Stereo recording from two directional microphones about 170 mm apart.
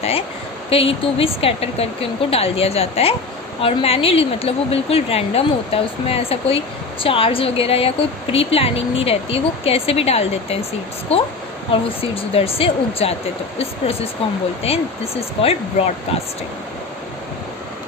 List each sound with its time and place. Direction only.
0.7 s a woman's voice: 35° left (ahead or behind)
11.7 s a woman's voice: 35° left (ahead or behind)